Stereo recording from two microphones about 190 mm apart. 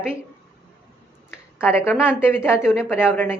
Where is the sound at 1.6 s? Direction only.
10° left (ahead or behind).